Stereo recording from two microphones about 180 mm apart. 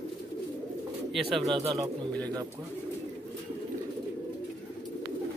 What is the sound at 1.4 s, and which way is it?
Speech, 25° right (ahead or behind).